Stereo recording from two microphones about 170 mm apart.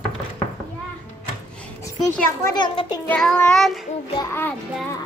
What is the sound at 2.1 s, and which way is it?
Speech, 15° left (ahead or behind).